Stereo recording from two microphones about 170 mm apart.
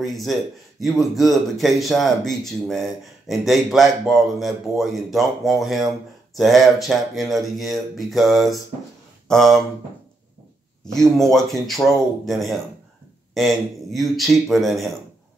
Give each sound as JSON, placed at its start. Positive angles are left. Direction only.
{"t": 0.0, "sound": "speech", "side_deg": 0}
{"t": 10.9, "sound": "speech", "side_deg": 0}